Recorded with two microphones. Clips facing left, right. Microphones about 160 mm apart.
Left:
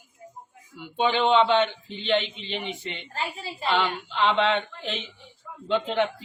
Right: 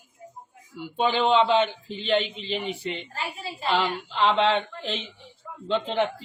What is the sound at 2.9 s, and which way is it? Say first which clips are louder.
Speech: left 1 dB; 35° right (ahead or behind).